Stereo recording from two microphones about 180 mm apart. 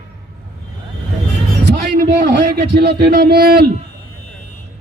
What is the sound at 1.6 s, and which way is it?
A man's voice, 60° right (ahead or behind).